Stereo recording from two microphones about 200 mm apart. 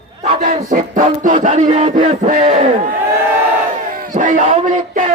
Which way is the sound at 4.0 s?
40° right (ahead or behind).